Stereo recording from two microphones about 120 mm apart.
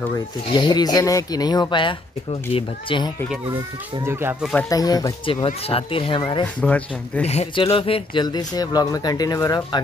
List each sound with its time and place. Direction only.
0.5 s speech: 40° left (ahead or behind)
4.0 s speech: 20° right (ahead or behind)
4.6 s speech: 30° left (ahead or behind)
5.2 s speech: 50° left (ahead or behind)
6.4 s speech: 10° left (ahead or behind)
7.5 s speech: 50° left (ahead or behind); by 9.8 s 30° left (ahead or behind)